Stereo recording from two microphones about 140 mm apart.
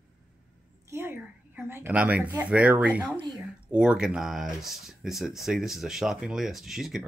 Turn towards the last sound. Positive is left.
turn(degrees=0)  # may be behind; listen again after turning